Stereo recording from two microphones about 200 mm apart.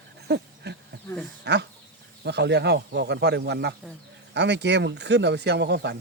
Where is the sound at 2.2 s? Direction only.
60° right (ahead or behind).